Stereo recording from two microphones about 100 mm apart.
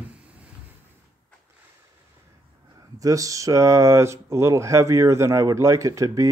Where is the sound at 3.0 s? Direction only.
35° right (ahead or behind).